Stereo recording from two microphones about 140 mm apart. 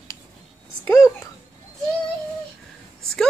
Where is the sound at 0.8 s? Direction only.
20° left (ahead or behind).